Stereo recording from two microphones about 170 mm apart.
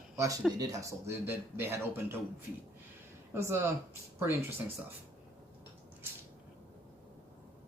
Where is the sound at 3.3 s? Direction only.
15° right (ahead or behind).